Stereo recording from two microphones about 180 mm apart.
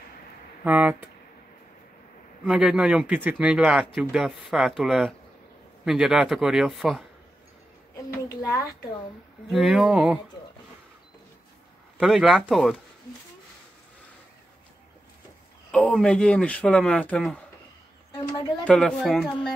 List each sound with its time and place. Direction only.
0.7 s speech: 10° right (ahead or behind)
2.4 s speech: 5° right (ahead or behind)
8.4 s speech: 15° left (ahead or behind)
9.5 s speech: centre (ahead or behind)
12.0 s speech: centre (ahead or behind)
15.7 s speech: 5° left (ahead or behind)
18.1 s a woman's voice: 20° left (ahead or behind)
18.6 s speech: 5° left (ahead or behind)